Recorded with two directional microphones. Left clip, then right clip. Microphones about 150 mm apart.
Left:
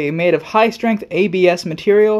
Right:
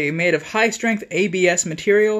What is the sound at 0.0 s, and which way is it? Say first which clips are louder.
Speech: left 3 dB; 30° left (ahead or behind).